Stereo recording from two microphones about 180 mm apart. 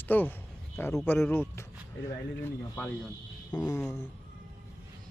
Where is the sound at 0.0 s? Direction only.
10° left (ahead or behind).